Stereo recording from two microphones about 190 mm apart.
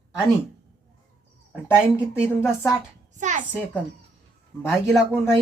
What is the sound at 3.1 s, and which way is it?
Speech, 40° right (ahead or behind).